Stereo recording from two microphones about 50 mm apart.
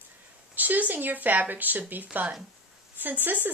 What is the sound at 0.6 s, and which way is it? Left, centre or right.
Speech, right.